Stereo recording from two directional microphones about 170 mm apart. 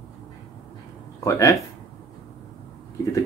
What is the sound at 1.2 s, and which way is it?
Speech, 20° left (ahead or behind).